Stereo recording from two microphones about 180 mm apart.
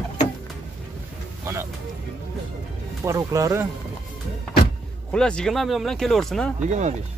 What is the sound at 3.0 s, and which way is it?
Speech, 15° right (ahead or behind).